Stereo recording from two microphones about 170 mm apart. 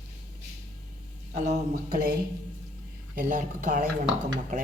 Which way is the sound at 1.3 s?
45° right (ahead or behind).